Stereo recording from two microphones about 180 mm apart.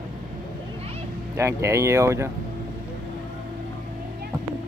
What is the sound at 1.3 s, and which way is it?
Speech, 15° right (ahead or behind).